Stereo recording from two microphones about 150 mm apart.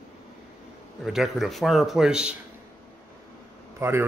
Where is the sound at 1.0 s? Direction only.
Centre (ahead or behind).